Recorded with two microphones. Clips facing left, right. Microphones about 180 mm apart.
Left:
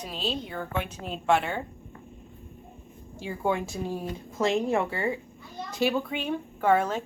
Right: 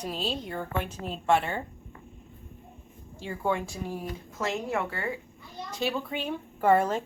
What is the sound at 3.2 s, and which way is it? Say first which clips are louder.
Speech: left 1 dB; 10° left (ahead or behind).